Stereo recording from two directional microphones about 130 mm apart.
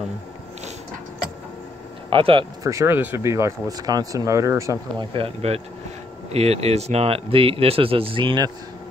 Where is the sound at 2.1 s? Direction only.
40° right (ahead or behind).